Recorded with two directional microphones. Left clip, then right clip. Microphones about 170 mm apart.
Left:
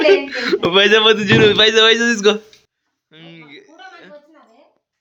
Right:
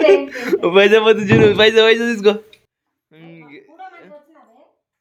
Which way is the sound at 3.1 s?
5° right (ahead or behind).